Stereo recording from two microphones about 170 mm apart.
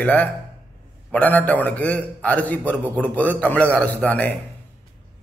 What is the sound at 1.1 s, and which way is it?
A man's voice, 10° left (ahead or behind).